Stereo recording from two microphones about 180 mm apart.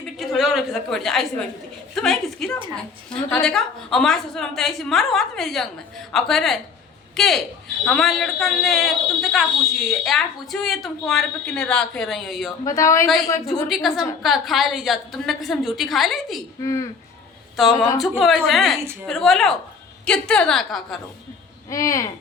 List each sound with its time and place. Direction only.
0.2 s a woman's voice: centre (ahead or behind)
12.6 s a woman's voice: 15° left (ahead or behind)
13.7 s speech: centre (ahead or behind)
16.6 s a woman's voice: 15° left (ahead or behind)
17.6 s speech: centre (ahead or behind)
21.7 s a woman's voice: 15° left (ahead or behind)